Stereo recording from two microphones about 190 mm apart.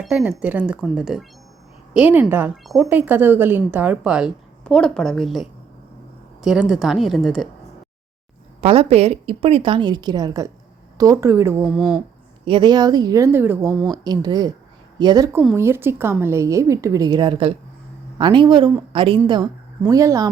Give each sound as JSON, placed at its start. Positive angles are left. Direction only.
{"t": 0.0, "sound": "a woman's voice", "side_deg": -5}
{"t": 2.9, "sound": "a woman's voice", "side_deg": -10}
{"t": 8.6, "sound": "a woman's voice", "side_deg": -30}
{"t": 12.5, "sound": "a woman's voice", "side_deg": -25}